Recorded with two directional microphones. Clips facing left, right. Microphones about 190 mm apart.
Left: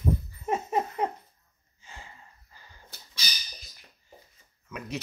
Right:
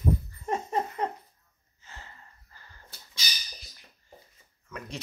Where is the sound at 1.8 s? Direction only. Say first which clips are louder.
Left 1 dB; 15° left (ahead or behind).